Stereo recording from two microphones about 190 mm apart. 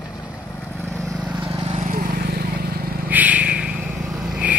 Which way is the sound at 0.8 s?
Centre (ahead or behind).